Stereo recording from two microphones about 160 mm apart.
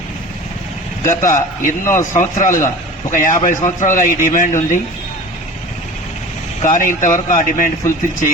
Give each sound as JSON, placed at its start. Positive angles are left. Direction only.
{"t": 1.0, "sound": "a man's voice", "side_deg": 50}
{"t": 6.6, "sound": "speech", "side_deg": 55}